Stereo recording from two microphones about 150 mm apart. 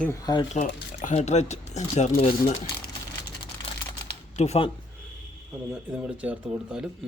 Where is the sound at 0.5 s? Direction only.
55° left (ahead or behind).